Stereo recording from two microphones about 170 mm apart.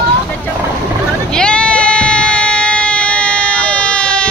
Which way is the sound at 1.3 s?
5° left (ahead or behind).